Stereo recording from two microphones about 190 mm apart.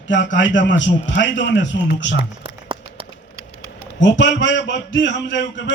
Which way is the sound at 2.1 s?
30° right (ahead or behind).